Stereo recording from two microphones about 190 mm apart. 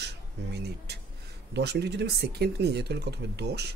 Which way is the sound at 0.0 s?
60° right (ahead or behind).